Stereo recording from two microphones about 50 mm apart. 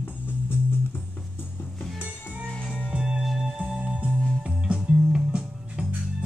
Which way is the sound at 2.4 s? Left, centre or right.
Centre.